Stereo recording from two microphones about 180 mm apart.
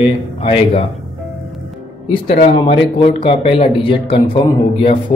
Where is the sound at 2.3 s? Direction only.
35° left (ahead or behind).